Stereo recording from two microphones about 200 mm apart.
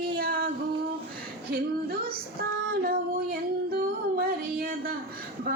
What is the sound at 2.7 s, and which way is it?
Female singing, 50° right (ahead or behind).